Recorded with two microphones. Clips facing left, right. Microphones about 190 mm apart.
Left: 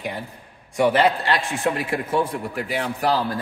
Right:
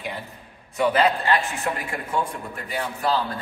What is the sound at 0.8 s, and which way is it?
A man's voice, 80° left.